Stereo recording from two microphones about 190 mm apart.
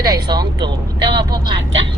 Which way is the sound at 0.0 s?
20° right (ahead or behind).